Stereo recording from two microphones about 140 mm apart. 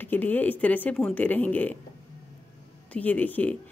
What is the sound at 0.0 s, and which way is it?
A woman's voice, 15° left (ahead or behind).